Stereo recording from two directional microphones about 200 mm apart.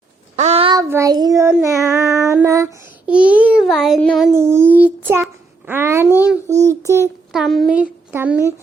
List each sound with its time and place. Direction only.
0.3 s child singing: 30° right (ahead or behind)
0.8 s child singing: 15° right (ahead or behind)
4.4 s child singing: 10° right (ahead or behind)
5.2 s babbling: 10° right (ahead or behind)
6.7 s child singing: 15° right (ahead or behind)
7.3 s a woman's voice: centre (ahead or behind)